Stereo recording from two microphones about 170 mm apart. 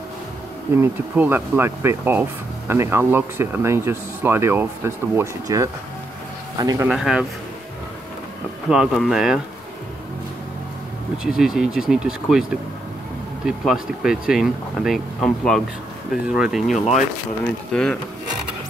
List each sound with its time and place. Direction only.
0.7 s speech: 10° right (ahead or behind)
6.9 s speech: 5° right (ahead or behind)
8.6 s speech: centre (ahead or behind)
11.3 s speech: 5° right (ahead or behind)